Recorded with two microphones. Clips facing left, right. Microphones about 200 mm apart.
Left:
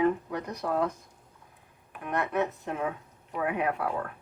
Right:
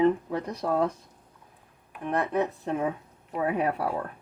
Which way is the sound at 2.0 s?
35° right (ahead or behind).